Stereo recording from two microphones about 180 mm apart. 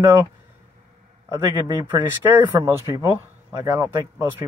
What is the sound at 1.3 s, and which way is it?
Speech, 15° right (ahead or behind).